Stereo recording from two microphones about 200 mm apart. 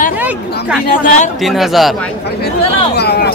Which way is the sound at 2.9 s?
55° left (ahead or behind).